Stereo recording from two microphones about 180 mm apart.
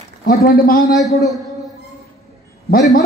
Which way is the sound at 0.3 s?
55° left (ahead or behind).